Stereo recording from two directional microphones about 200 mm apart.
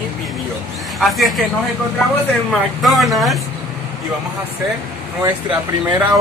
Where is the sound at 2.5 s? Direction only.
Centre (ahead or behind).